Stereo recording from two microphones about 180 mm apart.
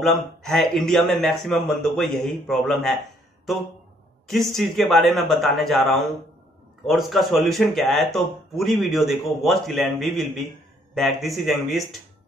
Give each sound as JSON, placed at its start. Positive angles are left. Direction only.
{"t": 0.0, "sound": "speech", "side_deg": 0}
{"t": 4.3, "sound": "speech", "side_deg": 0}